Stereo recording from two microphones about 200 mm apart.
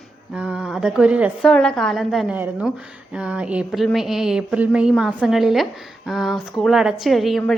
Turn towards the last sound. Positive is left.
turn(degrees=0)  # may be behind; listen again after turning